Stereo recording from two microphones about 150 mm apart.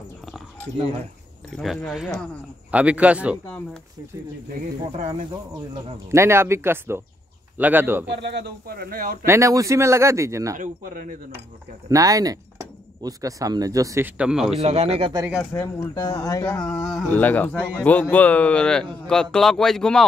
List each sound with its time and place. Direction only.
1.5 s speech: centre (ahead or behind)
6.1 s speech: 15° right (ahead or behind)
8.3 s speech: 90° right
9.2 s speech: 20° right (ahead or behind)
10.6 s speech: 65° right (ahead or behind)
11.9 s speech: 25° right (ahead or behind); by 14.6 s 5° right (ahead or behind)
14.6 s speech: 45° right (ahead or behind)
15.5 s speech: 15° left (ahead or behind)
15.9 s speech: 25° left (ahead or behind)
17.0 s speech: 10° left (ahead or behind)